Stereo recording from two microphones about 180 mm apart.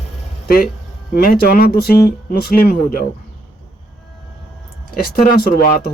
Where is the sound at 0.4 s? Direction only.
55° left (ahead or behind).